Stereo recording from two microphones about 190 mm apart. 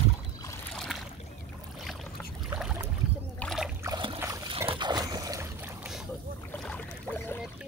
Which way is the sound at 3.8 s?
25° right (ahead or behind).